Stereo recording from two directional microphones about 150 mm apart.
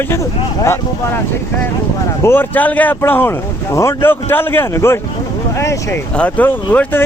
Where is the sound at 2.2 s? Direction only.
15° left (ahead or behind).